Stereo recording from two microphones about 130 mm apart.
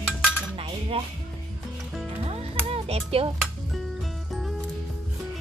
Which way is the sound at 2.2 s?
50° right (ahead or behind).